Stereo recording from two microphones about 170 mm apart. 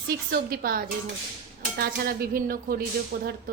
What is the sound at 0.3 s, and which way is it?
Dishes, 60° right (ahead or behind).